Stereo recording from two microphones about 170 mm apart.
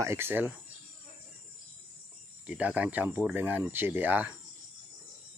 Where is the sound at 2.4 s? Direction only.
5° right (ahead or behind).